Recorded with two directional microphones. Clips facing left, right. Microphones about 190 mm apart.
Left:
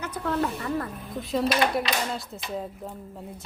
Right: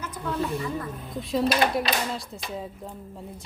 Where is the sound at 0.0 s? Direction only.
65° left (ahead or behind).